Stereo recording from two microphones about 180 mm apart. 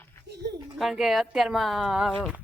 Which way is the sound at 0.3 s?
70° right (ahead or behind).